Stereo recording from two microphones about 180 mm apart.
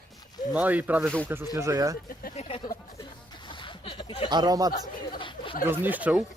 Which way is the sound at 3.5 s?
25° left (ahead or behind).